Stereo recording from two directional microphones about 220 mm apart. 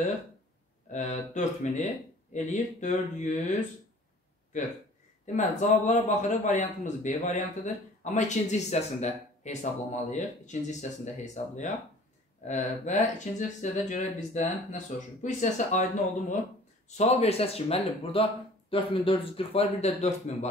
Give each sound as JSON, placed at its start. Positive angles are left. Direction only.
{"t": 0.9, "sound": "a man's voice", "side_deg": 35}
{"t": 5.2, "sound": "a man's voice", "side_deg": 35}